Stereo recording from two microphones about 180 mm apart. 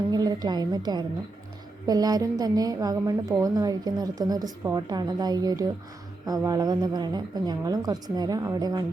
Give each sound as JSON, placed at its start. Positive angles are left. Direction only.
{"t": 0.1, "sound": "a woman's voice", "side_deg": -20}